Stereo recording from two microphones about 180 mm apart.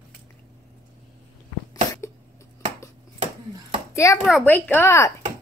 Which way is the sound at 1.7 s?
20° left (ahead or behind).